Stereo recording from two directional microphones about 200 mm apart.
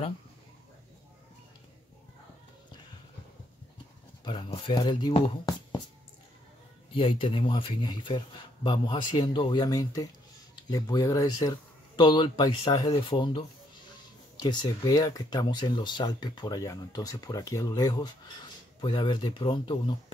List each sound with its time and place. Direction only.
4.2 s speech: 25° left (ahead or behind)
6.9 s speech: 25° left (ahead or behind)
14.4 s speech: 20° left (ahead or behind)